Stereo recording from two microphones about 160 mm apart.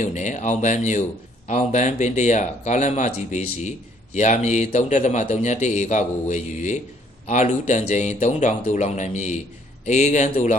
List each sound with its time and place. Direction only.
0.0 s speech: 50° left (ahead or behind)